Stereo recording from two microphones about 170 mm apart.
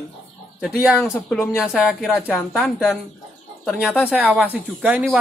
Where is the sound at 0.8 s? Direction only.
5° right (ahead or behind).